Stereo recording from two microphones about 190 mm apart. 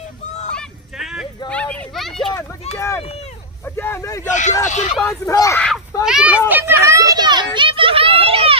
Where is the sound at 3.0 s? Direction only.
35° left (ahead or behind).